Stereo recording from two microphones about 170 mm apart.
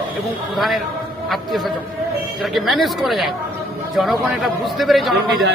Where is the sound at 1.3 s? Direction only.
Centre (ahead or behind).